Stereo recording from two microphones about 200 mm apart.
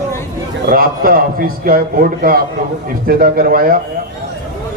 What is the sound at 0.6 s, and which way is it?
A man's voice, 45° right (ahead or behind).